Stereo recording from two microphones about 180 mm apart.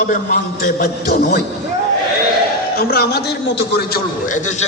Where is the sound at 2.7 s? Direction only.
60° left (ahead or behind).